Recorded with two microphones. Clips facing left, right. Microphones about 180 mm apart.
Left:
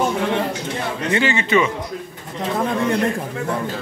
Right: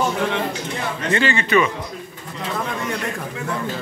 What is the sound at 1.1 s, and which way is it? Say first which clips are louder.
Speech: even; 20° left (ahead or behind).